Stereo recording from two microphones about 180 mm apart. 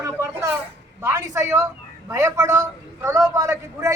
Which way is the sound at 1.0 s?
15° right (ahead or behind).